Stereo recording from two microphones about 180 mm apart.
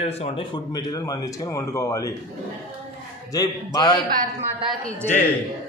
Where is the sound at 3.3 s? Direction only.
20° left (ahead or behind).